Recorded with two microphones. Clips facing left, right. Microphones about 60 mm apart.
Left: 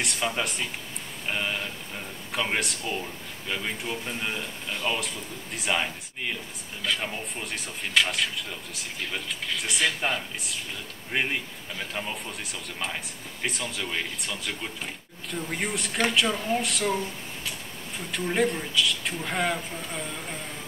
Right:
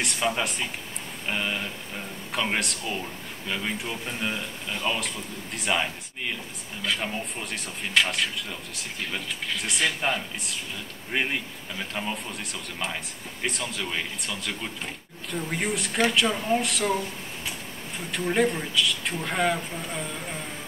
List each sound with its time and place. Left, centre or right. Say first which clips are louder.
0.0 s speech: right 2 dB; centre
18.1 s speech: right 2 dB; centre